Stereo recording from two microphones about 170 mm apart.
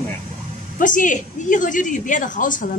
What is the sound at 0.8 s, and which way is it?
A woman's voice, 50° left (ahead or behind).